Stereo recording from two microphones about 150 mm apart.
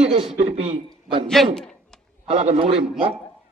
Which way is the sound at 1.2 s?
5° left (ahead or behind).